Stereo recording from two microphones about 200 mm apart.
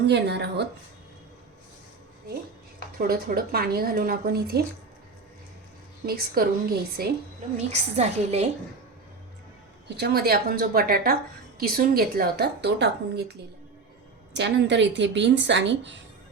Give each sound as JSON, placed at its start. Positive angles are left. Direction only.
{"t": 0.1, "sound": "a woman's voice", "side_deg": -55}
{"t": 3.0, "sound": "a woman's voice", "side_deg": -45}
{"t": 6.1, "sound": "a woman's voice", "side_deg": -50}
{"t": 7.7, "sound": "a woman's voice", "side_deg": -35}
{"t": 10.0, "sound": "a woman's voice", "side_deg": -50}
{"t": 14.3, "sound": "a woman's voice", "side_deg": -60}